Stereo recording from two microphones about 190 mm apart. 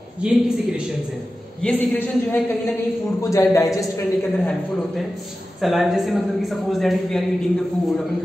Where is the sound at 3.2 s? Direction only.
15° left (ahead or behind).